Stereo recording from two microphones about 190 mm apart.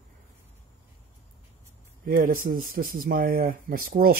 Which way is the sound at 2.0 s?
50° right (ahead or behind).